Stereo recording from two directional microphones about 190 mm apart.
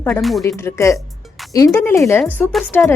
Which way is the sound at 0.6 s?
15° left (ahead or behind).